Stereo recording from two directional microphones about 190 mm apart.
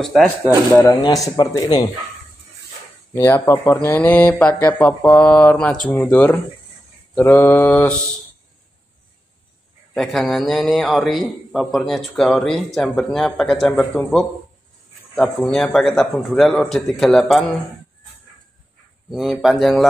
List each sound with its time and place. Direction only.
0.0 s a man's voice: centre (ahead or behind)
1.0 s speech: 20° left (ahead or behind)
3.3 s speech: 15° left (ahead or behind)
9.9 s a man's voice: centre (ahead or behind)
19.0 s a man's voice: centre (ahead or behind)